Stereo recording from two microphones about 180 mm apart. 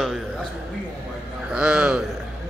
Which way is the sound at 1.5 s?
5° right (ahead or behind).